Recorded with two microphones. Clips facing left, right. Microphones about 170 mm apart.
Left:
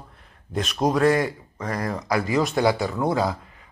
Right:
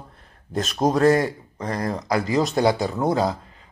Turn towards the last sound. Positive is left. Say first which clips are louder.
# right 1 dB
turn(degrees=-25)  # may be behind; listen again after turning